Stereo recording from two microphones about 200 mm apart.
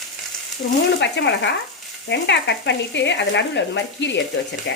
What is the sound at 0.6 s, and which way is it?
Speech, 55° left (ahead or behind).